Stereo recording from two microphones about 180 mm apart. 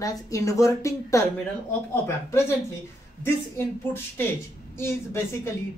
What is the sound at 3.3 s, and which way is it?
A woman's voice, 15° left (ahead or behind).